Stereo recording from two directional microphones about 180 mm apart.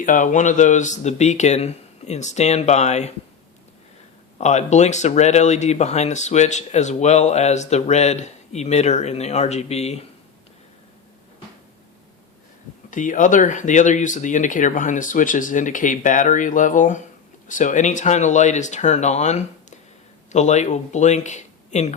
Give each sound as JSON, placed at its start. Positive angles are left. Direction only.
{"t": 0.0, "sound": "speech", "side_deg": 45}
{"t": 4.4, "sound": "speech", "side_deg": 40}
{"t": 12.9, "sound": "speech", "side_deg": 45}